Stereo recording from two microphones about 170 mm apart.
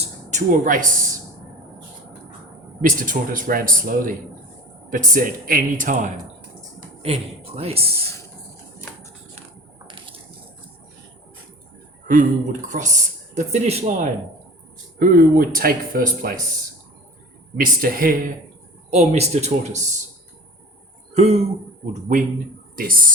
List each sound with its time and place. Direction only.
0.0 s a sound: 45° right (ahead or behind)
2.8 s speech: 55° right (ahead or behind)
6.7 s speech: 35° right (ahead or behind)
9.8 s water: 30° right (ahead or behind)
12.0 s speech: 50° right (ahead or behind)
14.9 s speech: 55° right (ahead or behind)
17.6 s speech: 55° right (ahead or behind)
18.9 s speech: 40° right (ahead or behind)
21.1 s a sound: 40° right (ahead or behind)
22.7 s speech: 55° right (ahead or behind)